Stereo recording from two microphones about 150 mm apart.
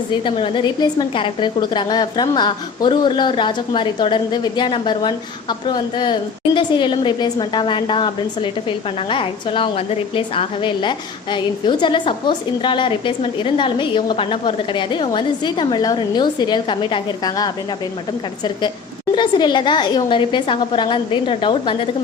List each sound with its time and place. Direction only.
0.1 s a woman's voice: 35° left (ahead or behind)
19.1 s a woman's voice: 30° left (ahead or behind)